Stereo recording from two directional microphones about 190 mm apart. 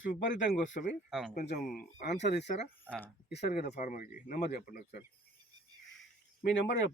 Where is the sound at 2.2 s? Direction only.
65° left (ahead or behind).